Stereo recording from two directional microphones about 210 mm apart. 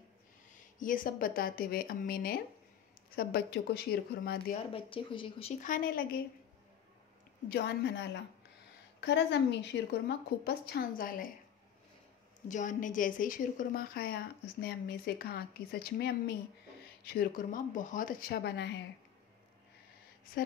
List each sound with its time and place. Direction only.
0.7 s a woman's voice: 40° left (ahead or behind)
4.7 s speech: 25° left (ahead or behind)
5.6 s a woman's voice: 40° left (ahead or behind)
7.4 s a woman's voice: 50° left (ahead or behind)
12.4 s a woman's voice: 35° left (ahead or behind); by 18.8 s 55° left (ahead or behind)